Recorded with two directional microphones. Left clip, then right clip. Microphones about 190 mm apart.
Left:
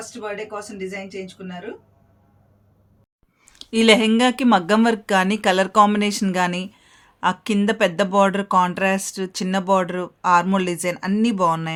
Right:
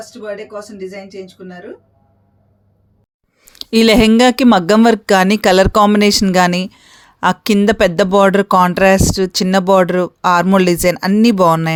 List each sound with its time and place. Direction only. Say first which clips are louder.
0.1 s speech: right 3 dB; 20° left (ahead or behind)
3.4 s a sound: right 5 dB; 45° right (ahead or behind)
4.1 s speech: right 7 dB; 45° right (ahead or behind)